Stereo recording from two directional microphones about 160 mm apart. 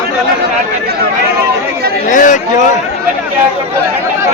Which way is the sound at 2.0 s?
55° left (ahead or behind).